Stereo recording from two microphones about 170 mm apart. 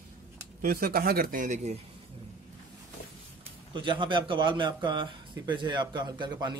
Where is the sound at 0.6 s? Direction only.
60° right (ahead or behind); by 1.8 s 45° right (ahead or behind).